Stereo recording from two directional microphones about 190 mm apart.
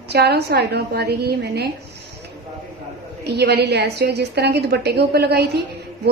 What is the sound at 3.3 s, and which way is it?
Speech, 60° right (ahead or behind).